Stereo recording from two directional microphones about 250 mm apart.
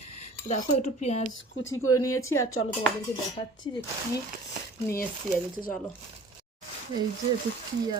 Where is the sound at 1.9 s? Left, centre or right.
Centre.